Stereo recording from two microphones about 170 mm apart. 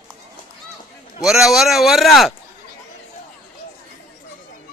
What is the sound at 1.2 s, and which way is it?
A man's voice, centre (ahead or behind).